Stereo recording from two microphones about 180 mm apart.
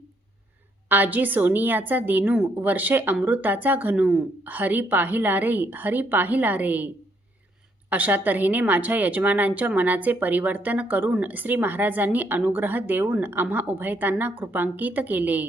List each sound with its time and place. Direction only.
0.9 s a woman's voice: 10° right (ahead or behind)